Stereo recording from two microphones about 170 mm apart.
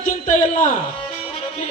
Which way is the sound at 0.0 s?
50° left (ahead or behind).